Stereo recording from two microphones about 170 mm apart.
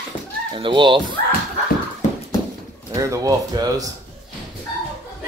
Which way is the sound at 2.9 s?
20° right (ahead or behind).